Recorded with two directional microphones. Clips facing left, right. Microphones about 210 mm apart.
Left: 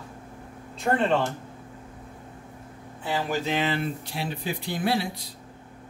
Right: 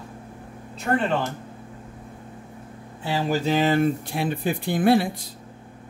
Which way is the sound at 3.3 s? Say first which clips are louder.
Right 7 dB; 40° right (ahead or behind).